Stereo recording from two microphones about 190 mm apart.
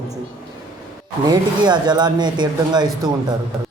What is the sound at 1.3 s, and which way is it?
Speech, 20° right (ahead or behind).